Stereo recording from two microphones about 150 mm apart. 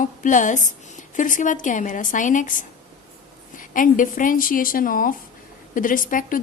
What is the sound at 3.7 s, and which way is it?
A woman's voice, 60° left (ahead or behind).